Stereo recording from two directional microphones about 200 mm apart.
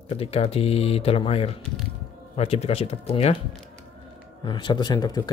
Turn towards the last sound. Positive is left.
turn(degrees=20)  # may be behind; listen again after turning